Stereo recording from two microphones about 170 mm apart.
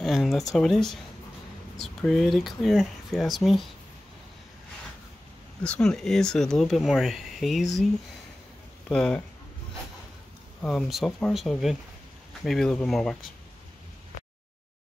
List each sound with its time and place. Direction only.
0.0 s speech: centre (ahead or behind)
5.6 s speech: 5° left (ahead or behind)
8.8 s speech: 5° left (ahead or behind)
10.6 s speech: 5° left (ahead or behind)